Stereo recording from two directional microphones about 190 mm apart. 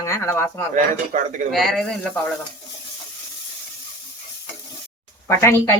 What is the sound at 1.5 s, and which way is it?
Speech, centre (ahead or behind).